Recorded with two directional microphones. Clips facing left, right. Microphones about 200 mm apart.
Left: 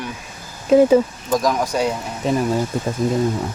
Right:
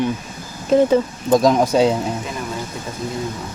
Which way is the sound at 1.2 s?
25° right (ahead or behind).